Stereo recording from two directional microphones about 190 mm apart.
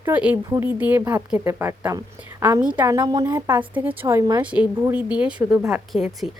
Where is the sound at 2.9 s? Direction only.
20° right (ahead or behind).